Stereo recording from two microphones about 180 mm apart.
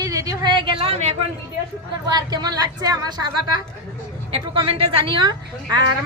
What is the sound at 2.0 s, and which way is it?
A woman's voice, 20° right (ahead or behind).